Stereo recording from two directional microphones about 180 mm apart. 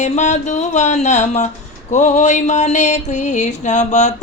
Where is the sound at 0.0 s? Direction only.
40° left (ahead or behind).